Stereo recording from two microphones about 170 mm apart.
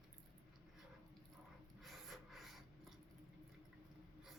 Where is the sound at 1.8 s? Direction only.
Centre (ahead or behind).